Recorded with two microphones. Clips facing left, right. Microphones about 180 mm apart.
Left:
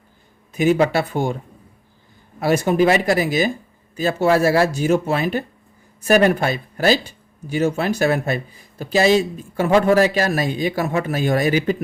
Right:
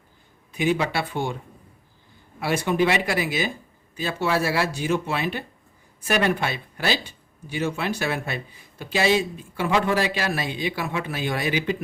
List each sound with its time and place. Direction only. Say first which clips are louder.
0.5 s speech: left 7 dB; 45° left (ahead or behind)
2.4 s speech: left 6 dB; 40° left (ahead or behind)